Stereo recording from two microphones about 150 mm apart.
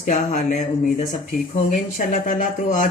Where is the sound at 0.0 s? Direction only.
50° left (ahead or behind).